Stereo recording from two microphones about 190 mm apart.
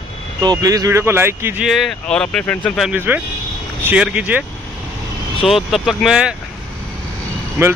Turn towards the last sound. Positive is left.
turn(degrees=-15)  # may be behind; listen again after turning